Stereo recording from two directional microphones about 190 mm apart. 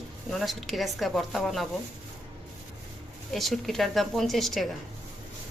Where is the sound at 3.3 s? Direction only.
Centre (ahead or behind).